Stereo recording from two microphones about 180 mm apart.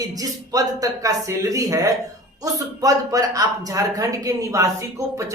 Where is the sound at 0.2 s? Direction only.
20° right (ahead or behind).